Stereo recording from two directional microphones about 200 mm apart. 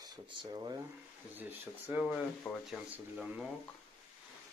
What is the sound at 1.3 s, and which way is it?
Speech, 10° right (ahead or behind).